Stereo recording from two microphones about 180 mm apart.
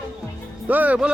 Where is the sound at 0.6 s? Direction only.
10° right (ahead or behind).